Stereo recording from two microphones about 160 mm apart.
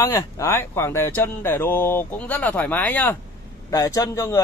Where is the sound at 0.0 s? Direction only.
20° left (ahead or behind).